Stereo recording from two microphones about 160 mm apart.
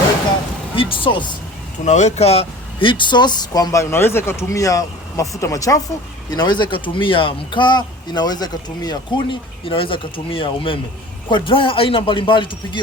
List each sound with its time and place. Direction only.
0.8 s speech: 35° left (ahead or behind)
1.8 s speech: 45° left (ahead or behind); by 12.8 s 30° left (ahead or behind)